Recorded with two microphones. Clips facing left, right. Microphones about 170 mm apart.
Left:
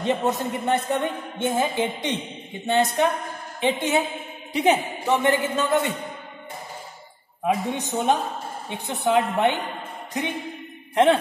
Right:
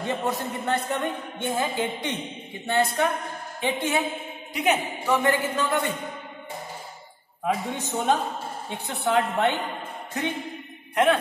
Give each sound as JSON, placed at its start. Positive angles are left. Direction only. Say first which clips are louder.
{"t": 0.0, "sound": "a woman's voice", "louder": "left 4 dB", "side_deg": 20}
{"t": 7.4, "sound": "a woman's voice", "louder": "left 3 dB", "side_deg": 20}